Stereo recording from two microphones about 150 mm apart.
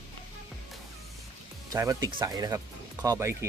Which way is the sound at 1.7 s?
20° right (ahead or behind).